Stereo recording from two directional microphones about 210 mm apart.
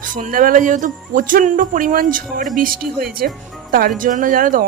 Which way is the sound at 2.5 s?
45° right (ahead or behind).